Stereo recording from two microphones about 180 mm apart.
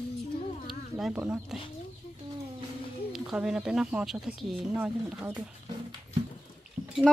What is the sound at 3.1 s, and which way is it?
Speech, 5° right (ahead or behind).